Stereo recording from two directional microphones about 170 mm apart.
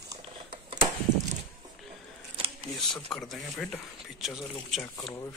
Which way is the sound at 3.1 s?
Centre (ahead or behind).